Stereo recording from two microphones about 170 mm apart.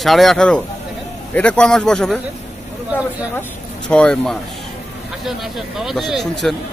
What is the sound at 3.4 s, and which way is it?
Speech, 5° left (ahead or behind).